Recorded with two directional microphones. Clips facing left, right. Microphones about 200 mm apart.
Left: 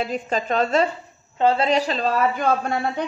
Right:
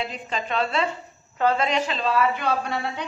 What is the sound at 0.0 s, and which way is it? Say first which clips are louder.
Speech: left 5 dB; 45° left (ahead or behind).